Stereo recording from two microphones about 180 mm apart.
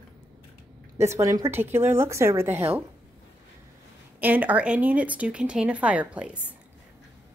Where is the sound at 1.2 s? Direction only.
15° right (ahead or behind).